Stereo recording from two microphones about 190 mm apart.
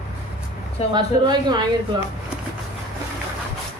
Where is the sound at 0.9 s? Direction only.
20° right (ahead or behind).